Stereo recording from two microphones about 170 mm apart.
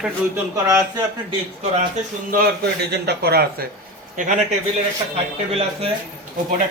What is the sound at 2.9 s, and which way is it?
Speech, 70° right (ahead or behind).